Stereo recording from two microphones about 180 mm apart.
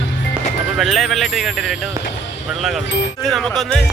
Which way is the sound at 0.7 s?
Centre (ahead or behind).